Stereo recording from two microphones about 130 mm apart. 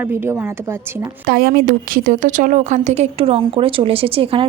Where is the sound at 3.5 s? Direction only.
45° right (ahead or behind).